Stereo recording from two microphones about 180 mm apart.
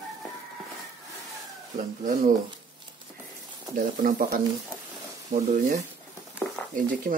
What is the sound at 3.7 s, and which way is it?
Speech, 45° right (ahead or behind).